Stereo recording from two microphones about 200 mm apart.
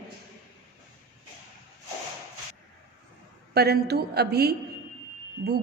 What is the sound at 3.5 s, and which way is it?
A woman's voice, 55° right (ahead or behind).